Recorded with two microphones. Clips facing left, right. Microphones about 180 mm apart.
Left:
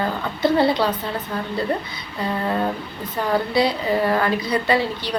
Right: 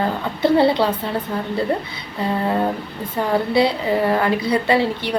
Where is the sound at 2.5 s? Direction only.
25° right (ahead or behind).